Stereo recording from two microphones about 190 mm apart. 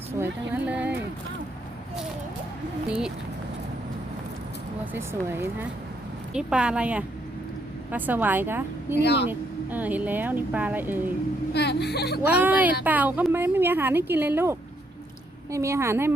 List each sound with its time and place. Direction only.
0.2 s a sound: 5° right (ahead or behind)
4.9 s a woman's voice: 10° right (ahead or behind)
11.5 s speech: 60° left (ahead or behind)
12.3 s a woman's voice: 10° right (ahead or behind)
15.5 s a woman's voice: 15° right (ahead or behind)